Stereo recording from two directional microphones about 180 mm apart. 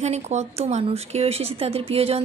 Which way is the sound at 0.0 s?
40° right (ahead or behind).